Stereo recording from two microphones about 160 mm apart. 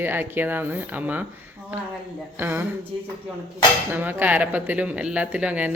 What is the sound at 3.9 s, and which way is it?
Speech, 10° right (ahead or behind).